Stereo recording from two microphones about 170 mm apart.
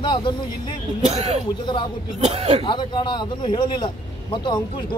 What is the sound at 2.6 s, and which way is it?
A man's voice, 25° left (ahead or behind).